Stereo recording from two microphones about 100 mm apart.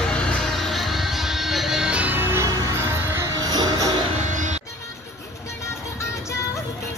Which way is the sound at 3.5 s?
40° right (ahead or behind).